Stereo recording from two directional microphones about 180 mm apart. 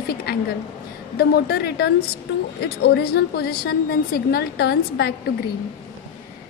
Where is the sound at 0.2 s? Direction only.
60° left (ahead or behind).